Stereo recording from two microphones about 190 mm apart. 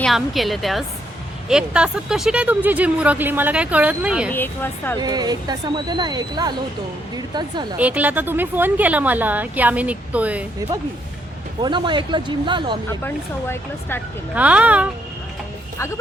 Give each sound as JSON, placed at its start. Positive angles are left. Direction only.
{"t": 0.0, "sound": "a woman's voice", "side_deg": 0}
{"t": 4.3, "sound": "speech", "side_deg": 10}
{"t": 4.9, "sound": "speech", "side_deg": -20}
{"t": 7.8, "sound": "speech", "side_deg": -10}
{"t": 11.6, "sound": "speech", "side_deg": -25}
{"t": 12.9, "sound": "speech", "side_deg": 10}
{"t": 14.3, "sound": "speech", "side_deg": -5}